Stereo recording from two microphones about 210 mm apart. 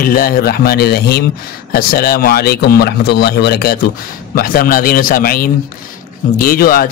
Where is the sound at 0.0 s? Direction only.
45° left (ahead or behind).